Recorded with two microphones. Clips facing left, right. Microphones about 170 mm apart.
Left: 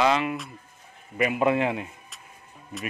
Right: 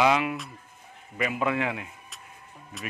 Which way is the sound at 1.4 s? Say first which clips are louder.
Left 5 dB; 30° left (ahead or behind).